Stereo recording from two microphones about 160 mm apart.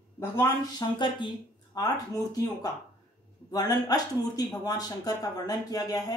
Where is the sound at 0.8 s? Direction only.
25° left (ahead or behind).